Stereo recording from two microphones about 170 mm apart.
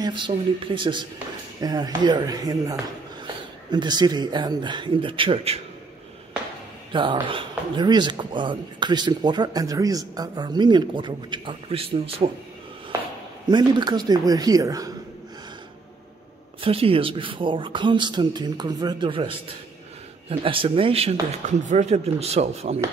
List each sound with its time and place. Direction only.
0.0 s speech: 30° right (ahead or behind)
3.7 s speech: 25° right (ahead or behind)
6.9 s speech: 30° right (ahead or behind)
13.5 s speech: 25° right (ahead or behind)
16.6 s speech: 35° right (ahead or behind)